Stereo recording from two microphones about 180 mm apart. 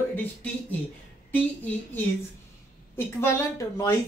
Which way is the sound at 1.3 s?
10° left (ahead or behind).